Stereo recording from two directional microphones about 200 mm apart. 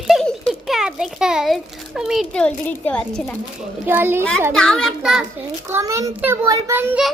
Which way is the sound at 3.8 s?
10° right (ahead or behind).